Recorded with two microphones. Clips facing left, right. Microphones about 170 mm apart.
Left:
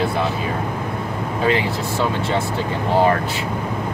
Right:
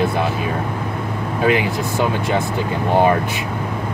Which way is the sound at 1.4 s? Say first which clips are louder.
Right 2 dB; 15° right (ahead or behind).